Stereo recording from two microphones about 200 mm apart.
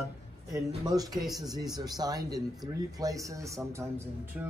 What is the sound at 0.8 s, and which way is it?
Speech, 20° right (ahead or behind).